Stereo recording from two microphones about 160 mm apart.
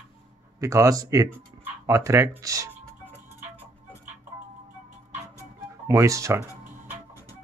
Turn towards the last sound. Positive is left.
turn(degrees=-20)  # may be behind; listen again after turning